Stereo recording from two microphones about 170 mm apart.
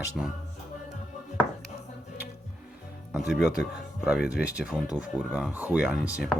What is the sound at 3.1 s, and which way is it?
Speech, 5° right (ahead or behind).